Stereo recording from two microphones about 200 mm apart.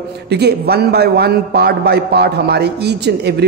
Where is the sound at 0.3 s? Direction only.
55° right (ahead or behind).